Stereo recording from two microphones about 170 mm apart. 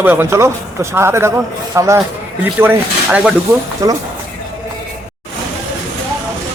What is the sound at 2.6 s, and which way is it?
Speech, 5° right (ahead or behind).